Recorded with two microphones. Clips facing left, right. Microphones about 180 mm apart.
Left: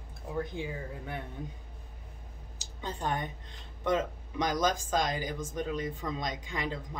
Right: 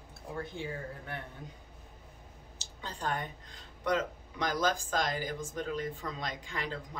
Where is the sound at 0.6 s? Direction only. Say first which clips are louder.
Left 2 dB; 15° left (ahead or behind).